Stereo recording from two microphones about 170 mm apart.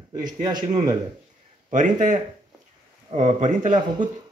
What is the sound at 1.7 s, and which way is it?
Speech, 50° right (ahead or behind).